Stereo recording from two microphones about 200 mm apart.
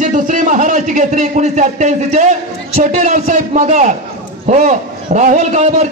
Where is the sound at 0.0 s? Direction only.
40° right (ahead or behind).